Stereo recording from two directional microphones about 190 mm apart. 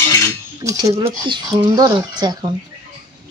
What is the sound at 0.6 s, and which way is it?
Cutlery, 20° right (ahead or behind).